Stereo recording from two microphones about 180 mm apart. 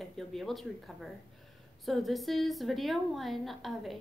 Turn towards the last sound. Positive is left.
turn(degrees=0)  # may be behind; listen again after turning